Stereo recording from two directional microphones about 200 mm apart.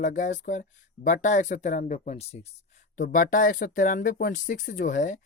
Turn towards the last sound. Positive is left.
turn(degrees=40)  # may be behind; listen again after turning